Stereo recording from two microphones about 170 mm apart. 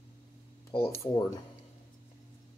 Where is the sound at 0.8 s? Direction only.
15° left (ahead or behind).